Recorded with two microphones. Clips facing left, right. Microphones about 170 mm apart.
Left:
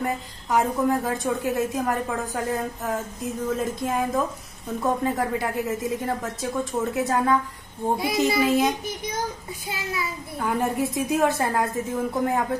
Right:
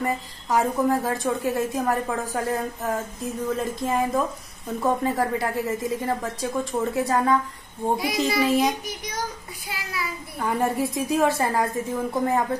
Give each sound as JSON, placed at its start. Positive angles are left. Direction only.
{"t": 0.0, "sound": "a woman's voice", "side_deg": 0}
{"t": 9.7, "sound": "child singing", "side_deg": 25}
{"t": 10.3, "sound": "a woman's voice", "side_deg": 0}